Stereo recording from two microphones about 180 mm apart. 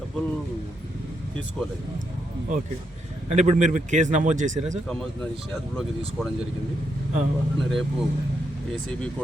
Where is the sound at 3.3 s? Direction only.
40° right (ahead or behind).